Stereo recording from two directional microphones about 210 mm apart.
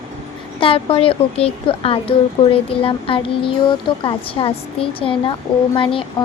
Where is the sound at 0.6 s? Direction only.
25° left (ahead or behind).